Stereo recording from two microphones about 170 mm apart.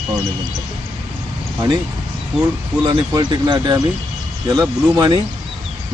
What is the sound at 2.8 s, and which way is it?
Speech, 25° right (ahead or behind).